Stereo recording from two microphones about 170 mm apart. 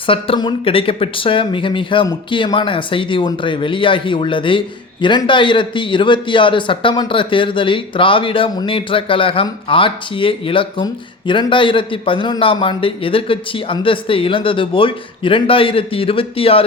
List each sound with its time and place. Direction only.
0.1 s a man's voice: 30° left (ahead or behind)